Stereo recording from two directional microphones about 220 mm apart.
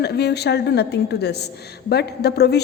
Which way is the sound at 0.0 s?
50° left (ahead or behind).